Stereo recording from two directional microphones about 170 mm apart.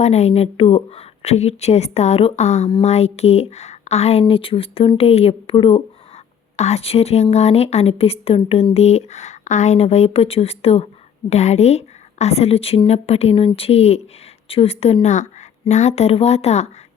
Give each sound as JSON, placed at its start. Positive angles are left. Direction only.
{"t": 0.0, "sound": "speech", "side_deg": 40}